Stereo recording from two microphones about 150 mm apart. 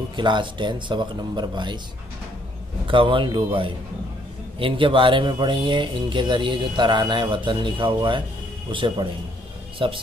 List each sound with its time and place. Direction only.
0.1 s speech: 30° right (ahead or behind)
2.9 s speech: 35° right (ahead or behind)